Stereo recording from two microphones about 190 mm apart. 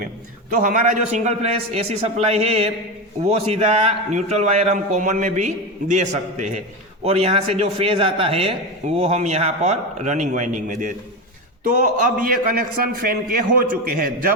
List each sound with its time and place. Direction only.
0.5 s a man's voice: 45° right (ahead or behind)